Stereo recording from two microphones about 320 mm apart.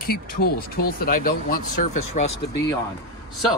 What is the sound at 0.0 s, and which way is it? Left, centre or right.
Speech, left.